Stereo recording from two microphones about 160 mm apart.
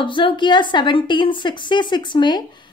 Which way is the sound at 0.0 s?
30° left (ahead or behind).